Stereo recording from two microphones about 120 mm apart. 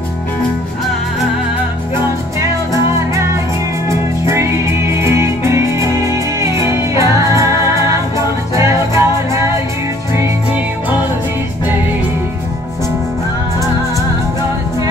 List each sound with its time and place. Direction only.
4.3 s music: 25° right (ahead or behind)